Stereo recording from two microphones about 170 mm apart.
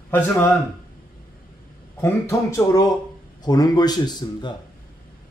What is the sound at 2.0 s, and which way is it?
Speech, 15° left (ahead or behind).